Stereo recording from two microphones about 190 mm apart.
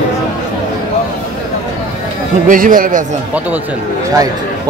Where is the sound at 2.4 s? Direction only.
45° right (ahead or behind).